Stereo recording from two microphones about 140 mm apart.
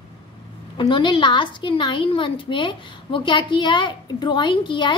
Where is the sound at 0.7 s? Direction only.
35° left (ahead or behind).